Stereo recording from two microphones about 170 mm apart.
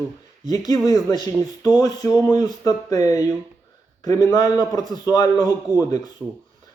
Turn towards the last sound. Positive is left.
turn(degrees=20)  # may be behind; listen again after turning